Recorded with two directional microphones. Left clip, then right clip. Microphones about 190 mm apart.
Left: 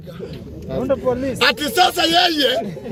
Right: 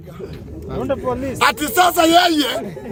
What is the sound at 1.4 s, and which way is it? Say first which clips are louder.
Speech: right 2 dB; 10° right (ahead or behind).